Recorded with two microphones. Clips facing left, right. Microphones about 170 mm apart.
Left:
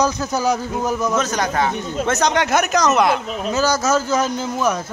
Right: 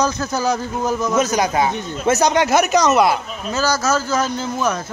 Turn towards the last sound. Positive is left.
turn(degrees=15)  # may be behind; listen again after turning